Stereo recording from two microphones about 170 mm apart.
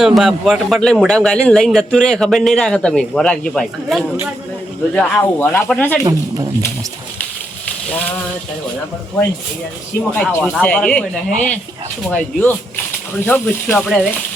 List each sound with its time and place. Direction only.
0.0 s a man's voice: centre (ahead or behind)
6.1 s speech: 20° right (ahead or behind)
10.0 s speech: 10° left (ahead or behind)